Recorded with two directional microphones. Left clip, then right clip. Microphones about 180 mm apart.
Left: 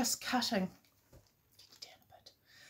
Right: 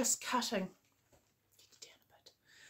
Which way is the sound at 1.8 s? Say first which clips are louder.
Left 4 dB; 20° right (ahead or behind).